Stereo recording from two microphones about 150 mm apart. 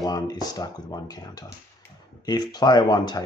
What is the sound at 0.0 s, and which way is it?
Speech, 25° left (ahead or behind).